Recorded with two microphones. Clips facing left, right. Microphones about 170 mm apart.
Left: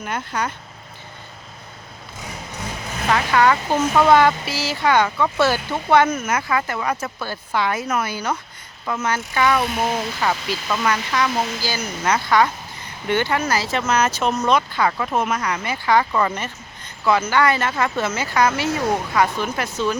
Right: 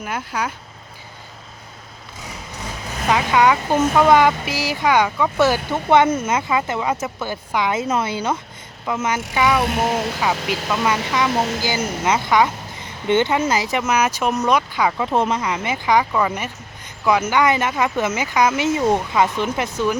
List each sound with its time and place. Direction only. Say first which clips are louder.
0.0 s speech: even; 10° right (ahead or behind)
3.1 s speech: right 1 dB; 15° right (ahead or behind)
11.3 s a woman's voice: right 3 dB; 45° right (ahead or behind)
11.6 s speech: right 3 dB; 20° right (ahead or behind)
15.1 s speech: right 2 dB; 30° right (ahead or behind)